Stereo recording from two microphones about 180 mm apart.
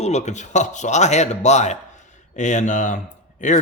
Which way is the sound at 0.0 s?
40° left (ahead or behind).